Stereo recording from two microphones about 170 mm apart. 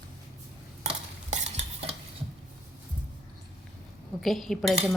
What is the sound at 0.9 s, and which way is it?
Stir, 40° right (ahead or behind).